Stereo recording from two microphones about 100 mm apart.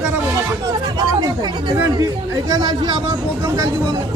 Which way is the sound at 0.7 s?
40° right (ahead or behind).